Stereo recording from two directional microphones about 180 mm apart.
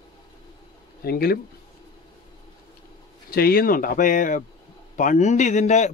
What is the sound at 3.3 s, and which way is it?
Speech, 55° left (ahead or behind).